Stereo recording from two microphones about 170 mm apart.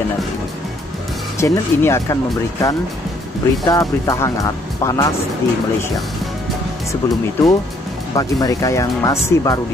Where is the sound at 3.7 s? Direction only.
20° left (ahead or behind).